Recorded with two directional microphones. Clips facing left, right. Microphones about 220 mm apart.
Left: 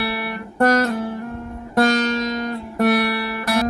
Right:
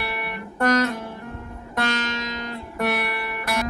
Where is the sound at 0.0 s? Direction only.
35° left (ahead or behind).